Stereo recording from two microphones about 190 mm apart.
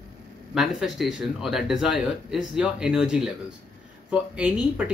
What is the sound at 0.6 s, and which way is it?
Speech, centre (ahead or behind).